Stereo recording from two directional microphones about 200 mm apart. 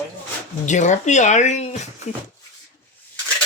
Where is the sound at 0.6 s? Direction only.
35° left (ahead or behind).